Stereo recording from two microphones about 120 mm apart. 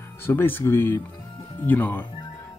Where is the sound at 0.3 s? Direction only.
15° left (ahead or behind).